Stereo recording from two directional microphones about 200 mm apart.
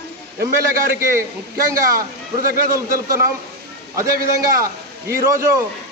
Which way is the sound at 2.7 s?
15° right (ahead or behind).